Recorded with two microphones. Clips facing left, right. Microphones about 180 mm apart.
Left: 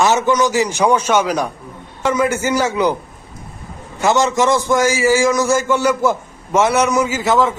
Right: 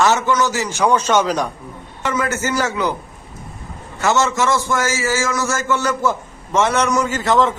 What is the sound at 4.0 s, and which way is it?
A man's voice, 15° left (ahead or behind).